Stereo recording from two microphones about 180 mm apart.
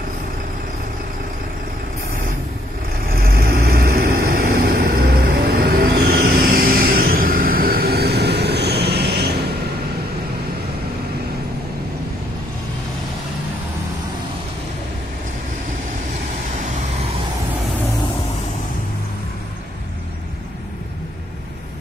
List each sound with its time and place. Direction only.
3.1 s vehicle: 55° right (ahead or behind)